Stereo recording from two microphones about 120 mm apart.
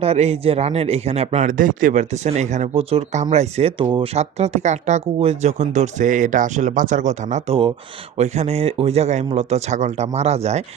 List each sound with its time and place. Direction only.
0.0 s a man's voice: 60° right (ahead or behind); by 2.6 s 80° right
2.7 s a man's voice: 65° right (ahead or behind)
3.8 s speech: 45° right (ahead or behind)
4.1 s speech: 65° right (ahead or behind)
8.2 s a man's voice: 60° right (ahead or behind)